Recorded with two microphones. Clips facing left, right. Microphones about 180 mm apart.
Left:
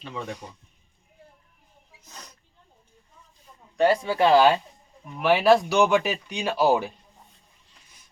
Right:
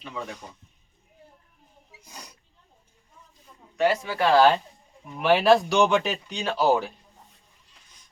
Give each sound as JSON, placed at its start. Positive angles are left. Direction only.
{"t": 2.0, "sound": "snort", "side_deg": -10}
{"t": 3.8, "sound": "speech", "side_deg": 30}
{"t": 4.4, "sound": "speech", "side_deg": 10}